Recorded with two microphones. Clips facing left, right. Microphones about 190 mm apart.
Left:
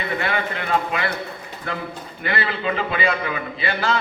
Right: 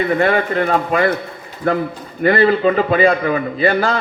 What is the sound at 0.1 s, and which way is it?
A man's voice, 45° right (ahead or behind).